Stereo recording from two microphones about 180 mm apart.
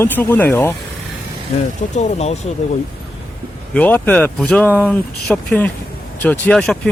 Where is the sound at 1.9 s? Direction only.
40° left (ahead or behind).